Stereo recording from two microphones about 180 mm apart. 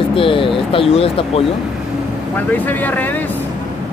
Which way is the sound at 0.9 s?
35° left (ahead or behind).